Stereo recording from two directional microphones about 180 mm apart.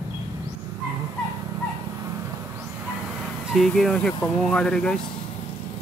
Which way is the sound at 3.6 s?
Centre (ahead or behind).